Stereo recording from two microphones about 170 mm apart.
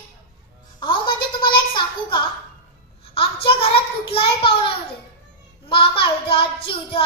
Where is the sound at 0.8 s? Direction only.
25° left (ahead or behind).